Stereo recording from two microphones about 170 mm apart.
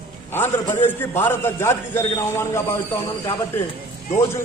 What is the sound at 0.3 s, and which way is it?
A man's voice, 15° left (ahead or behind).